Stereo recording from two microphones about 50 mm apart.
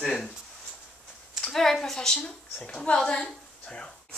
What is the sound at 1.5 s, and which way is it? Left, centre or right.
Speech, centre.